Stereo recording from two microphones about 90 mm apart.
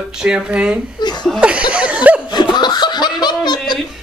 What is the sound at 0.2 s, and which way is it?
Speech, 10° right (ahead or behind).